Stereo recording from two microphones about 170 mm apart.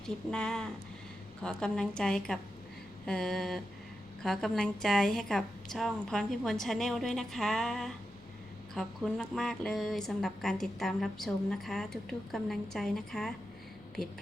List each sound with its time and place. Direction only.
0.3 s a woman's voice: 5° left (ahead or behind)